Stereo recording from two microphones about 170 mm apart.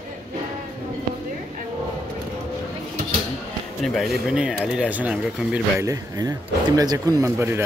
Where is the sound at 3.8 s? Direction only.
Centre (ahead or behind).